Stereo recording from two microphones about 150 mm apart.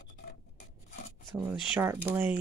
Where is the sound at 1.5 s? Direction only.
15° right (ahead or behind).